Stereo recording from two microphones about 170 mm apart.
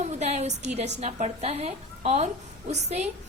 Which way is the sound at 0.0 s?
40° right (ahead or behind).